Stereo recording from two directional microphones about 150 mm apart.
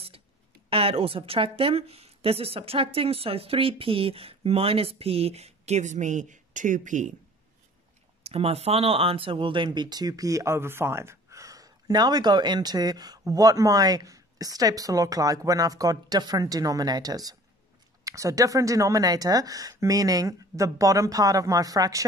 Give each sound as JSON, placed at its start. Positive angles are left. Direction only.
{"t": 0.7, "sound": "a woman's voice", "side_deg": -40}
{"t": 8.2, "sound": "speech", "side_deg": -40}